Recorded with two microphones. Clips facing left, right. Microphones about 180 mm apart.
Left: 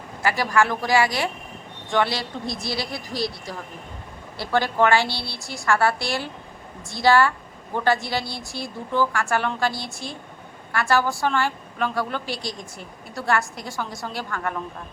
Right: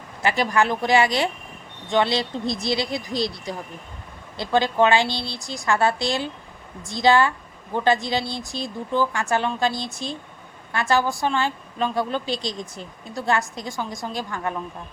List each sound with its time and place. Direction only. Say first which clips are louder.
0.2 s a woman's voice: even; 20° right (ahead or behind)